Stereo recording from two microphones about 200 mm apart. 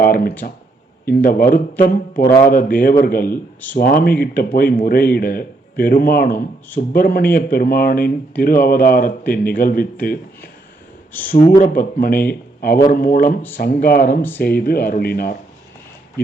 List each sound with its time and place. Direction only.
0.0 s speech: 45° left (ahead or behind)
14.2 s speech: 10° left (ahead or behind)
14.4 s speech: 50° left (ahead or behind)